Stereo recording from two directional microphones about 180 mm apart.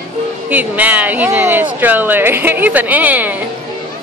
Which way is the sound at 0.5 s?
10° right (ahead or behind).